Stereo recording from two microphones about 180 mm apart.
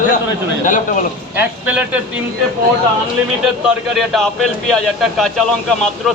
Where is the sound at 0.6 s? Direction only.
45° left (ahead or behind).